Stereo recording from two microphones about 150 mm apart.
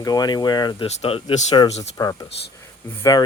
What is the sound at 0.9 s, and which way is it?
Speech, 40° left (ahead or behind).